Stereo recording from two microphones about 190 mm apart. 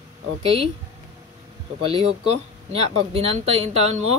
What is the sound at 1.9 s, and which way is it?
Speech, 30° right (ahead or behind).